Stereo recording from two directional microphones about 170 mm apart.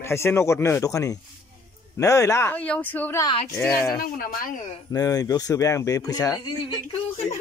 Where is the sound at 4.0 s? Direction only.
55° left (ahead or behind).